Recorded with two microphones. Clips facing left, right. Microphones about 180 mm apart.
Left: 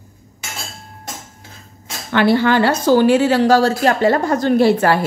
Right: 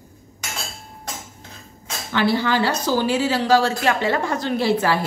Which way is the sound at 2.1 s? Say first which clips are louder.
Left 6 dB; 60° left (ahead or behind).